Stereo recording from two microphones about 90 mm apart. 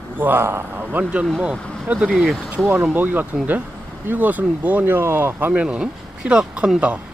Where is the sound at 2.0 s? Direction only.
5° right (ahead or behind).